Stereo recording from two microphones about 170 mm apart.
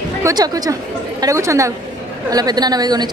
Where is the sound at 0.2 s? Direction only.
20° right (ahead or behind).